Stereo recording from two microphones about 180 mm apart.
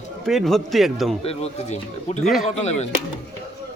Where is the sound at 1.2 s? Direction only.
35° left (ahead or behind).